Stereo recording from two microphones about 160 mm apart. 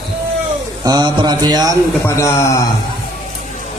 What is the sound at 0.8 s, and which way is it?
Mantra, 25° right (ahead or behind).